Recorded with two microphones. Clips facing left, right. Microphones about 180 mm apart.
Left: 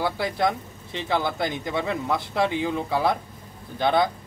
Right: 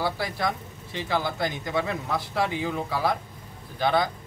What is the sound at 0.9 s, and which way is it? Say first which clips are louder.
Speech: left 2 dB; 20° left (ahead or behind).